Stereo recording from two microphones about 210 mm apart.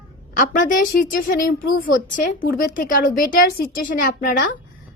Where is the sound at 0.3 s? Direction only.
40° left (ahead or behind).